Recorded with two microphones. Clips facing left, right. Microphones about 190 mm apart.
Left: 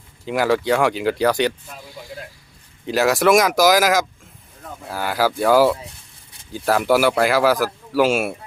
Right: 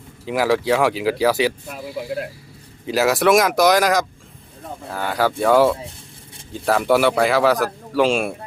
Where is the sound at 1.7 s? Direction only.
70° right (ahead or behind).